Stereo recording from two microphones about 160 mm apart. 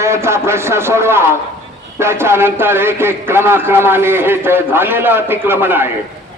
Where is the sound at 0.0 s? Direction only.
15° right (ahead or behind).